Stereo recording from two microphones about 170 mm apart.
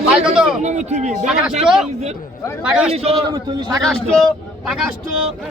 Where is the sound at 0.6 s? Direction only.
45° right (ahead or behind).